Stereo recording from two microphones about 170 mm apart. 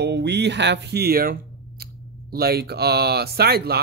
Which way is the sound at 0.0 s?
80° right.